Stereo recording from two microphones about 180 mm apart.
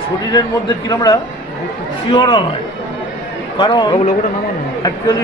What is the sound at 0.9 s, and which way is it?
A man's voice, 25° left (ahead or behind).